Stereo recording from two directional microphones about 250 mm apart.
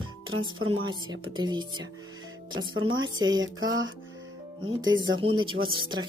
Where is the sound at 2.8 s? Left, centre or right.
Right.